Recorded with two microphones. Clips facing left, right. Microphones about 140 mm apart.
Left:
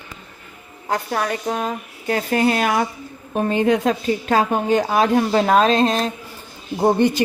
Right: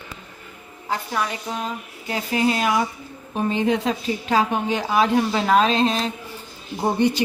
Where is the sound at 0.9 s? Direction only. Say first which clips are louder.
Left 3 dB; 50° left (ahead or behind).